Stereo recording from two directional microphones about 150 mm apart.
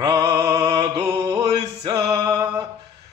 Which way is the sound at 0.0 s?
20° right (ahead or behind).